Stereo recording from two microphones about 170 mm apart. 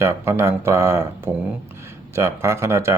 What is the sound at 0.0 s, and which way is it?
Speech, 15° right (ahead or behind).